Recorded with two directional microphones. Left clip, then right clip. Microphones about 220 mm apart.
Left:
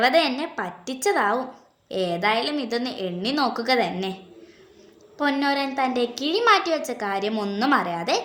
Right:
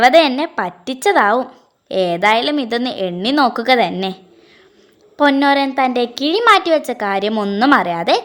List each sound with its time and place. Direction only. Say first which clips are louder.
0.0 s a woman's voice: right 9 dB; 40° right (ahead or behind)